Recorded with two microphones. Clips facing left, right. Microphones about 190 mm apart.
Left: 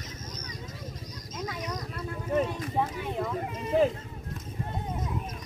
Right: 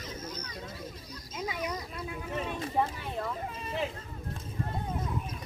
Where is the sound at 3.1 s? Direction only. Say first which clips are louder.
Left 4 dB; 15° left (ahead or behind).